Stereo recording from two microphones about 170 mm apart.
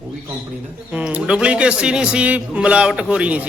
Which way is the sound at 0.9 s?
5° right (ahead or behind).